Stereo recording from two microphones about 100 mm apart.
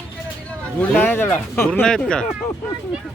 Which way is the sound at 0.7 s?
20° left (ahead or behind).